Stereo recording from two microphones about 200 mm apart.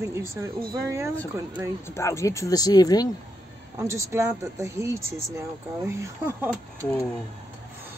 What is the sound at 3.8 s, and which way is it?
A woman's voice, 15° right (ahead or behind).